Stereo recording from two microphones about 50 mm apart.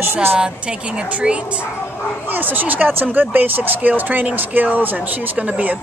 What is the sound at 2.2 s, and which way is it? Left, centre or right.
Speech, right.